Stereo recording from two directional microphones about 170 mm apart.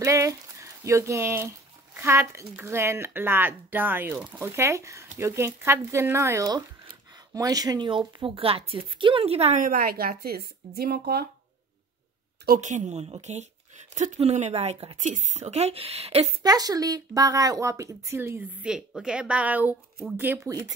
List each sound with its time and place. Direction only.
0.0 s speech: 20° right (ahead or behind); by 9.7 s 40° right (ahead or behind)
9.7 s speech: 60° right (ahead or behind)
12.5 s speech: 45° right (ahead or behind)
16.4 s speech: 20° right (ahead or behind)